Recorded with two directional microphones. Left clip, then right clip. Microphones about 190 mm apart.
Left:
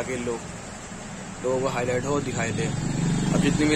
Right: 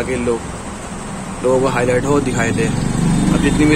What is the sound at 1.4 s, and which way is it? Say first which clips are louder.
Speech: right 10 dB; 10° left (ahead or behind).